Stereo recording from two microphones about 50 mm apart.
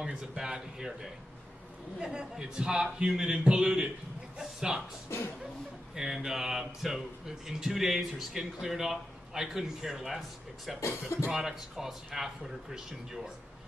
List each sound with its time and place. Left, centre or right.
0.0 s speech: centre
2.0 s speech: centre
5.9 s speech: centre